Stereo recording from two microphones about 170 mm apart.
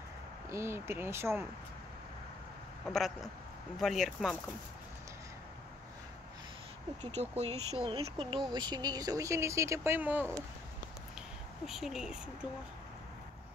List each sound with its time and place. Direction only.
0.5 s speech: 15° right (ahead or behind)
2.9 s speech: centre (ahead or behind)
7.1 s speech: 40° right (ahead or behind); by 10.3 s 10° right (ahead or behind)
11.6 s speech: centre (ahead or behind)